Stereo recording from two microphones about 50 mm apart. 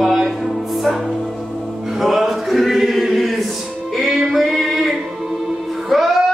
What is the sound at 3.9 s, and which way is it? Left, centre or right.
Music, centre.